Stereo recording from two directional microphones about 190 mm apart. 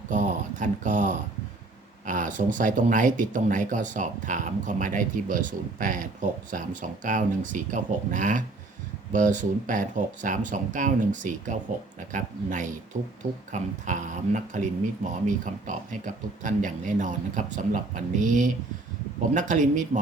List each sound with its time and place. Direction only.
0.1 s speech: 40° right (ahead or behind)